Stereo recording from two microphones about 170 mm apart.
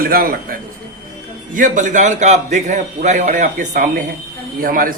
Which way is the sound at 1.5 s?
50° right (ahead or behind).